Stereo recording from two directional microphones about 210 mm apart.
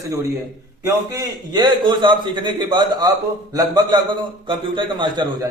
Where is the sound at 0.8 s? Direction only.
15° right (ahead or behind).